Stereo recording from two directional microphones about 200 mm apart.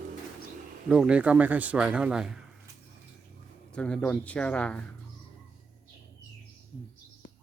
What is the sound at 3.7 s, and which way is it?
A man's voice, 5° left (ahead or behind).